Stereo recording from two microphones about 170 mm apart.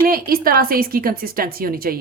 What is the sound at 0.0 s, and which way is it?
A woman's voice, 60° right (ahead or behind).